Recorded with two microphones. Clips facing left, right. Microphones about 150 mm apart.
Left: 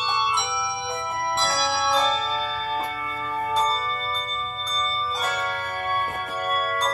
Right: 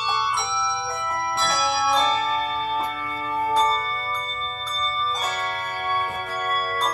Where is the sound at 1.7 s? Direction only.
15° right (ahead or behind).